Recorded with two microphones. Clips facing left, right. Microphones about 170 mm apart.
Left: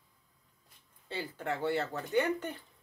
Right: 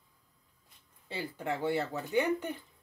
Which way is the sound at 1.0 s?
15° right (ahead or behind).